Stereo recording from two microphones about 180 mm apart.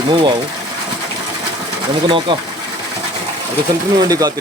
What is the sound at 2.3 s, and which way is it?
Speech, 25° right (ahead or behind).